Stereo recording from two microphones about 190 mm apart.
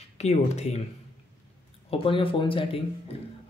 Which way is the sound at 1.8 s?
30° left (ahead or behind).